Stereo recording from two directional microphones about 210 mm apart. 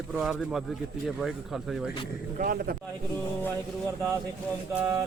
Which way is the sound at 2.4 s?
45° right (ahead or behind).